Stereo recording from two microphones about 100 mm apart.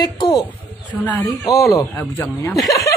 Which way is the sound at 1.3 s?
30° left (ahead or behind).